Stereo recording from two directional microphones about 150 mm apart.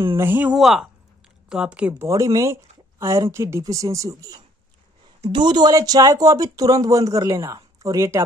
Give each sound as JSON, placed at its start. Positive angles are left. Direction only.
{"t": 0.2, "sound": "speech", "side_deg": -15}
{"t": 0.6, "sound": "speech", "side_deg": 0}
{"t": 2.0, "sound": "speech", "side_deg": -20}